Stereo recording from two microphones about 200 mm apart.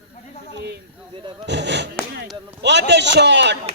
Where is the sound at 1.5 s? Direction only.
60° right (ahead or behind).